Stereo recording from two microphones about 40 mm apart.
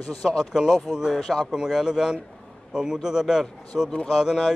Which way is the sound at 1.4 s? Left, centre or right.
Centre.